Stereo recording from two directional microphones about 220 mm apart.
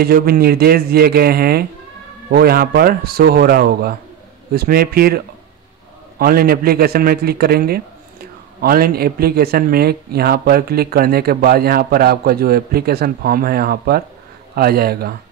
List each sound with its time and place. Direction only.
0.0 s speech: 45° right (ahead or behind)